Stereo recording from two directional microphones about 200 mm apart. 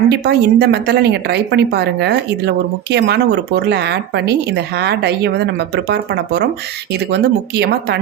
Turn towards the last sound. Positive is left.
turn(degrees=-55)  # may be behind; listen again after turning